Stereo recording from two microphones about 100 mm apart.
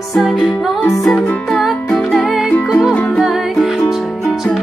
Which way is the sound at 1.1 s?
15° left (ahead or behind).